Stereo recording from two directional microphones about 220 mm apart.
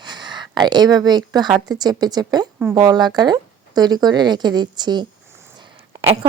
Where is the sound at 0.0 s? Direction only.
20° right (ahead or behind).